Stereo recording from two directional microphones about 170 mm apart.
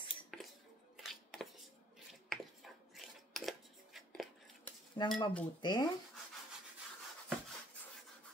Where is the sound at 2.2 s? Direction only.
Centre (ahead or behind).